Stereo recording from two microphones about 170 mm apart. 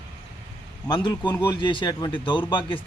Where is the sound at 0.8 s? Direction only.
20° left (ahead or behind).